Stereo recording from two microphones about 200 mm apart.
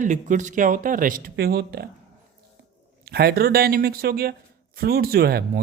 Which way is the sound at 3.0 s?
50° right (ahead or behind).